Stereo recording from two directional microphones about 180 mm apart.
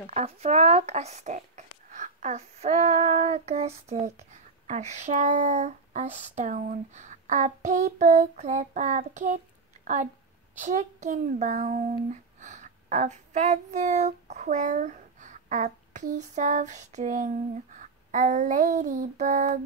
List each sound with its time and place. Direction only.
0.1 s speech: 40° right (ahead or behind)
10.6 s a child's voice: 45° right (ahead or behind)